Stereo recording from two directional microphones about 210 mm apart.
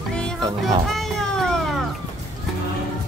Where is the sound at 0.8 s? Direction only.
Centre (ahead or behind).